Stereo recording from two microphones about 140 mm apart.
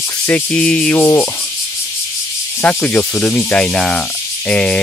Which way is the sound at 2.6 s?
10° left (ahead or behind).